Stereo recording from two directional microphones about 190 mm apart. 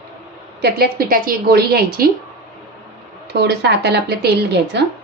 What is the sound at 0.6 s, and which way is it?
A woman's voice, 55° right (ahead or behind).